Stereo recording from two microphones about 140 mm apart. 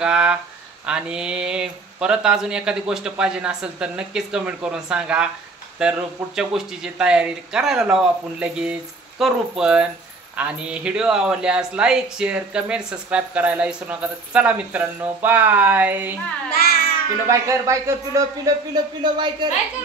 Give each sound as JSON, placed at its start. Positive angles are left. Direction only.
{"t": 0.0, "sound": "speech", "side_deg": -5}
{"t": 16.5, "sound": "babbling", "side_deg": 90}
{"t": 17.3, "sound": "speech", "side_deg": -20}
{"t": 19.1, "sound": "a woman's voice", "side_deg": -35}